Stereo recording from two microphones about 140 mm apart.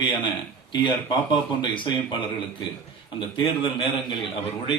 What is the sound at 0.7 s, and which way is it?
A man's voice, 35° left (ahead or behind).